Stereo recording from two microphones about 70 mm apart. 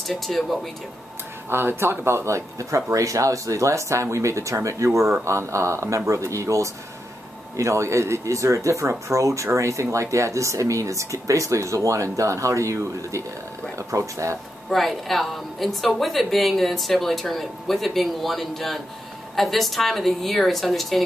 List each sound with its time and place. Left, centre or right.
0.1 s a woman's voice: centre
1.5 s speech: right
14.7 s a woman's voice: centre